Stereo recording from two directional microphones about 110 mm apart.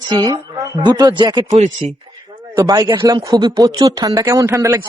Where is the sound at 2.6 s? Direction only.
35° right (ahead or behind).